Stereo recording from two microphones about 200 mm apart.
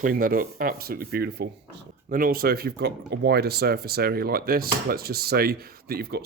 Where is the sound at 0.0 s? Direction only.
45° right (ahead or behind).